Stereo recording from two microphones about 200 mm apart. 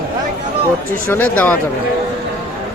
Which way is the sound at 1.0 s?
10° left (ahead or behind).